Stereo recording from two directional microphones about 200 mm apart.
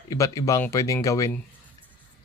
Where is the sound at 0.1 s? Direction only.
15° left (ahead or behind).